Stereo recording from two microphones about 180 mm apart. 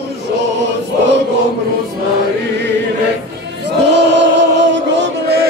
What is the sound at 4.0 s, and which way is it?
Chant, 80° right.